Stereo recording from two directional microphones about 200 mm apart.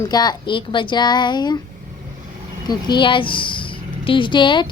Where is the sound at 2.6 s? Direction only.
25° left (ahead or behind).